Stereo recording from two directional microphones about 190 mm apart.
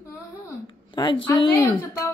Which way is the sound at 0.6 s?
25° left (ahead or behind).